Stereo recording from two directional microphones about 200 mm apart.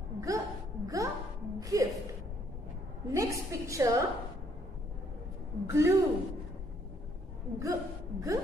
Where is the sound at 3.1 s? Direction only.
15° right (ahead or behind).